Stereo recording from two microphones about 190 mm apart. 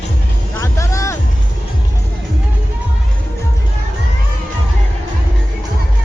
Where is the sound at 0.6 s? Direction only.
15° left (ahead or behind).